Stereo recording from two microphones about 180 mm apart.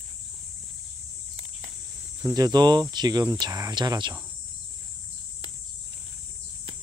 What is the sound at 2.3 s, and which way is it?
Speech, 20° right (ahead or behind).